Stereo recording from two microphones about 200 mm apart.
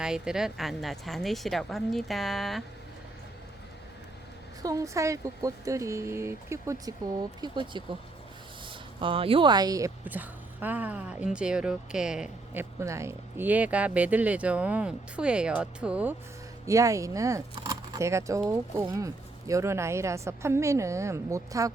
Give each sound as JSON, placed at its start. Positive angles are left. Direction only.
{"t": 0.0, "sound": "speech", "side_deg": -5}
{"t": 4.6, "sound": "speech", "side_deg": -15}
{"t": 12.8, "sound": "speech", "side_deg": -15}